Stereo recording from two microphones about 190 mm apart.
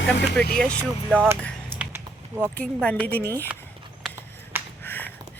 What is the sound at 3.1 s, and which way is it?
Speech, 10° left (ahead or behind).